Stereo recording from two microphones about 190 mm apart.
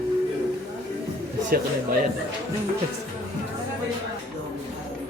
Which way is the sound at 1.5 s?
50° right (ahead or behind).